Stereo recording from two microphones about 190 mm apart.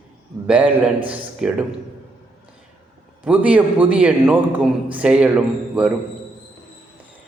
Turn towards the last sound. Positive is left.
turn(degrees=-5)  # may be behind; listen again after turning